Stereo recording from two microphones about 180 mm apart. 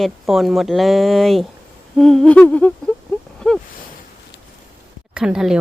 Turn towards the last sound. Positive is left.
turn(degrees=-5)  # may be behind; listen again after turning